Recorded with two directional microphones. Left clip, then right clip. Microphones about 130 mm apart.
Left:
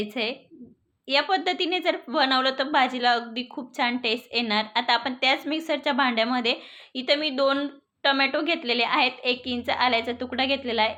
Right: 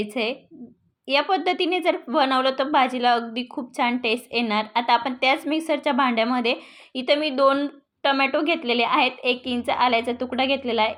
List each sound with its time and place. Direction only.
0.0 s a woman's voice: 35° right (ahead or behind)